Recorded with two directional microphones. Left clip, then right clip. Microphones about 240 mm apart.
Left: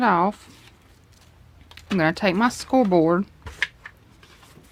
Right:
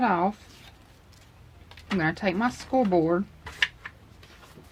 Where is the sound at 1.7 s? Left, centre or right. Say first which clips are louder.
Left 5 dB; left.